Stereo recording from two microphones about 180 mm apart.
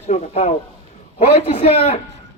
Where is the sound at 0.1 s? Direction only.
35° left (ahead or behind).